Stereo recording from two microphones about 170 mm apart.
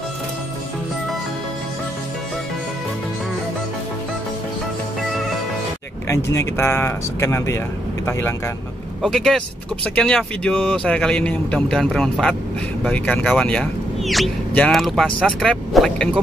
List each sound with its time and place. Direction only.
6.3 s speech: 15° left (ahead or behind)
9.0 s speech: centre (ahead or behind)